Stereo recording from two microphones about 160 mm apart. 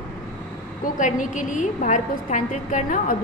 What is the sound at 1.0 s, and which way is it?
A woman's voice, 50° left (ahead or behind).